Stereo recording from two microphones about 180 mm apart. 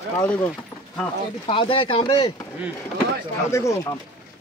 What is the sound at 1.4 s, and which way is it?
Speech, 30° left (ahead or behind).